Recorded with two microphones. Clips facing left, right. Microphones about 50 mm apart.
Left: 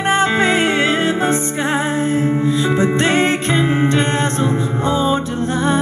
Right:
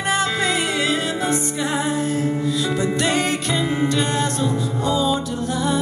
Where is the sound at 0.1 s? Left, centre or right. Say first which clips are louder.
Left 6 dB; left.